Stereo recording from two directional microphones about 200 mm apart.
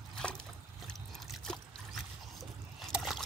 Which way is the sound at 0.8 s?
5° left (ahead or behind).